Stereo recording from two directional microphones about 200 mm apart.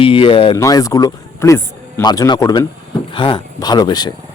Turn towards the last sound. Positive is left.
turn(degrees=20)  # may be behind; listen again after turning